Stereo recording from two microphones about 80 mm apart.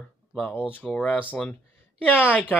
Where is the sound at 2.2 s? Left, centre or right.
Centre.